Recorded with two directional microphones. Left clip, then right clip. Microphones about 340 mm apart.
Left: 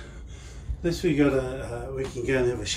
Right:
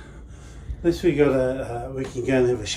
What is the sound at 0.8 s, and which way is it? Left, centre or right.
Speech, right.